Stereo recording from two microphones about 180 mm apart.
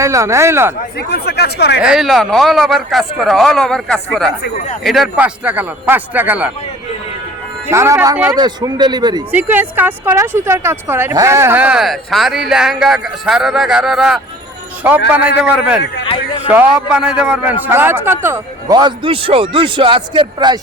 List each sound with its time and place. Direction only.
0.0 s speech: 15° right (ahead or behind)
0.9 s speech: 65° left (ahead or behind)
1.8 s speech: centre (ahead or behind)
7.7 s speech: 15° right (ahead or behind)
8.3 s speech: 20° right (ahead or behind)
9.3 s speech: 10° right (ahead or behind); by 20.6 s 25° right (ahead or behind)